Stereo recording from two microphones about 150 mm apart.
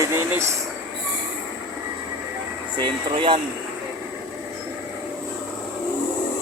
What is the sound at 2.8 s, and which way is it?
Speech, 35° right (ahead or behind).